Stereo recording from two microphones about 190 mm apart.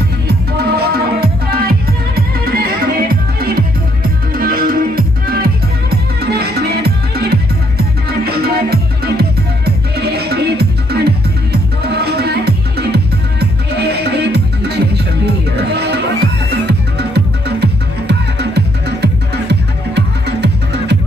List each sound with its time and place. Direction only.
0.3 s music: 55° right (ahead or behind)